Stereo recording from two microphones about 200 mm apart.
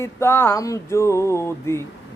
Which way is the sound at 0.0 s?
10° left (ahead or behind).